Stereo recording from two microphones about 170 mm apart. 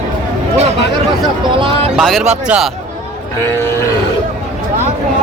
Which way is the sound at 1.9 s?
Centre (ahead or behind).